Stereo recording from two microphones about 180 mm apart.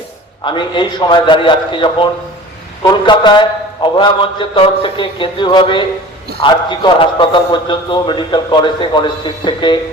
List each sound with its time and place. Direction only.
0.4 s a man's voice: 25° left (ahead or behind)